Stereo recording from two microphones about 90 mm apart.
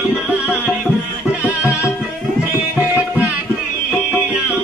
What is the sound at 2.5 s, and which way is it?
Music, 15° right (ahead or behind).